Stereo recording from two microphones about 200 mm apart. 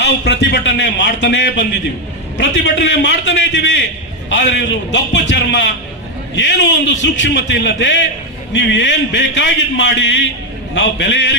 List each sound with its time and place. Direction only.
0.0 s a man's voice: 60° left (ahead or behind)